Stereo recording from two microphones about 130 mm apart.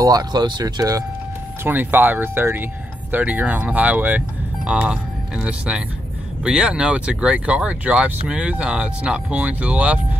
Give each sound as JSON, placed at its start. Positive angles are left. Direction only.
{"t": 0.0, "sound": "speech", "side_deg": -30}
{"t": 1.6, "sound": "speech", "side_deg": -15}